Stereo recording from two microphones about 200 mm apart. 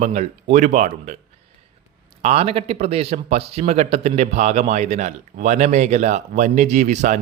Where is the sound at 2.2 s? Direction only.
30° right (ahead or behind).